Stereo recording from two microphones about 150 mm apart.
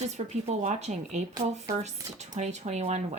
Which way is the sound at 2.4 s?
50° right (ahead or behind).